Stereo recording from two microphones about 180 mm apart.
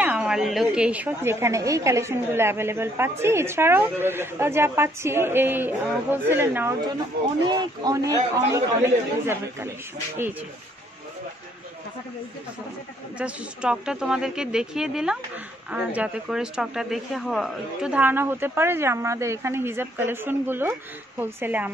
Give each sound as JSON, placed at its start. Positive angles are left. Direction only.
{"t": 0.0, "sound": "a woman's voice", "side_deg": -5}
{"t": 7.4, "sound": "a woman's voice", "side_deg": -20}
{"t": 13.2, "sound": "a woman's voice", "side_deg": -5}